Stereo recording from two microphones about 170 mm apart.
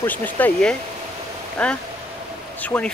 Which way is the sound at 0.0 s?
10° left (ahead or behind).